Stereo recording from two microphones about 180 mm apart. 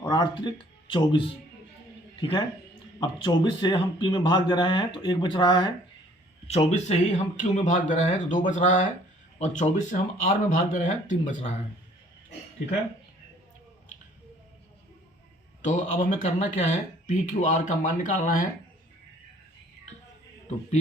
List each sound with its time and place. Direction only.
0.0 s speech: 25° left (ahead or behind)
3.0 s a man's voice: 25° left (ahead or behind)
6.5 s speech: 40° left (ahead or behind)
15.6 s speech: 45° left (ahead or behind)